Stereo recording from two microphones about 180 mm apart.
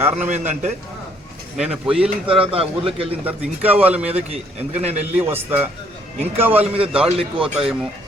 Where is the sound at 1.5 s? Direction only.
5° right (ahead or behind).